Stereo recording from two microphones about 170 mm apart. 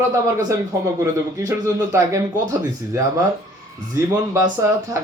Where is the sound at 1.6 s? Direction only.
20° right (ahead or behind).